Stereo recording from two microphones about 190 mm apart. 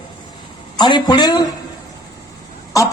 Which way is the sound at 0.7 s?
25° left (ahead or behind).